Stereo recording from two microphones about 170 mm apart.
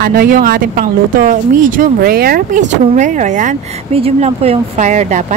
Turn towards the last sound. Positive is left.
turn(degrees=-45)  # may be behind; listen again after turning